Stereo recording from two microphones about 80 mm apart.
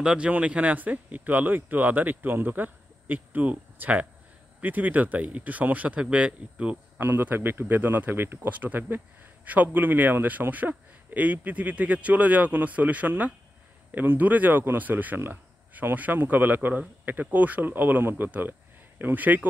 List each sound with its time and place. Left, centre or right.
0.0 s speech: centre